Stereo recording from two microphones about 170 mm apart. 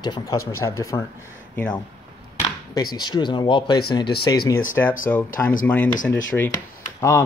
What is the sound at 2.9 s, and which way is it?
Speech, 25° left (ahead or behind).